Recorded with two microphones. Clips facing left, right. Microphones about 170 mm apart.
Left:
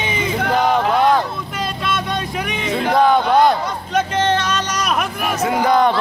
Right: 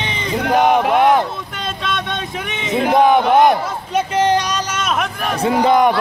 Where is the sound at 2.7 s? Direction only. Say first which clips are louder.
Right 2 dB; 20° right (ahead or behind).